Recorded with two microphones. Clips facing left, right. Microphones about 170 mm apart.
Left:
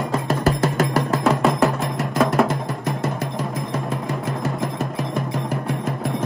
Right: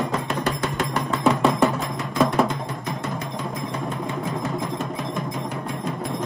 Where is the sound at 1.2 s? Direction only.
Centre (ahead or behind).